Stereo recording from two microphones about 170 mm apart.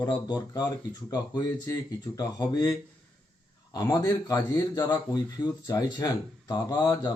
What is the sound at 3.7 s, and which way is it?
Speech, 20° left (ahead or behind).